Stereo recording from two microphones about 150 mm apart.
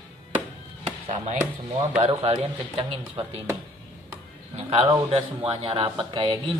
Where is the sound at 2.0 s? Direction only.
40° right (ahead or behind).